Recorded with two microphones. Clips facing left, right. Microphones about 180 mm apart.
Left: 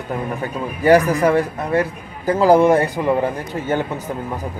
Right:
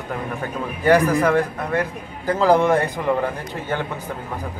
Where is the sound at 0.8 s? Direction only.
15° left (ahead or behind).